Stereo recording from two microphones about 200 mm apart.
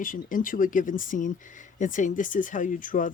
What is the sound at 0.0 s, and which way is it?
Speech, 40° left (ahead or behind).